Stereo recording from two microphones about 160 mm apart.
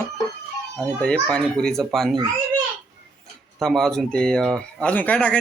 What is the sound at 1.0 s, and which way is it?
Speech, 5° left (ahead or behind).